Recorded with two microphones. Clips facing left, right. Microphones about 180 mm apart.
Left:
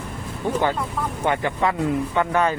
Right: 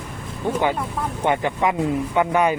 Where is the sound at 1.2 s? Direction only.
20° right (ahead or behind).